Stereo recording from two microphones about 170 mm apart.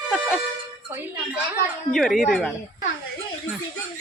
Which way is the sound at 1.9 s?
Centre (ahead or behind).